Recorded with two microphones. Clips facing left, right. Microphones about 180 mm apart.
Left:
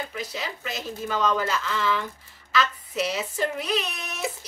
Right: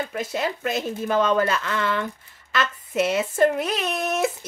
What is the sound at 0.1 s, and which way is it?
A woman's voice, 50° right (ahead or behind).